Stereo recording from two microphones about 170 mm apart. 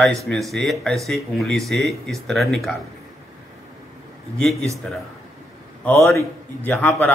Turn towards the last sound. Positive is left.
turn(degrees=10)  # may be behind; listen again after turning